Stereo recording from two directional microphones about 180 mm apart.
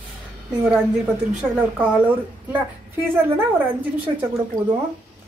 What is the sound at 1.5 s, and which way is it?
A woman's voice, 5° right (ahead or behind).